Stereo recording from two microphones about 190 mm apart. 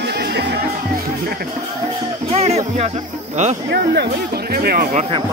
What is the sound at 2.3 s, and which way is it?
Speech, 35° right (ahead or behind).